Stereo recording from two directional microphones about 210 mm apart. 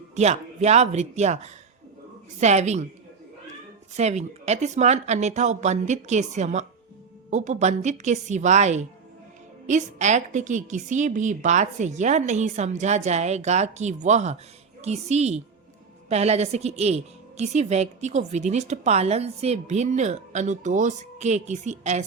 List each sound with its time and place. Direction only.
0.2 s a woman's voice: 30° right (ahead or behind)
3.9 s a woman's voice: 30° right (ahead or behind)